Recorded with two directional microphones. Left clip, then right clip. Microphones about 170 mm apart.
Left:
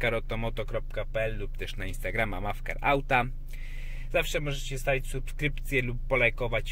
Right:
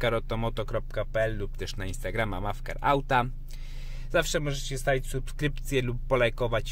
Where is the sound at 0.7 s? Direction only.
40° right (ahead or behind).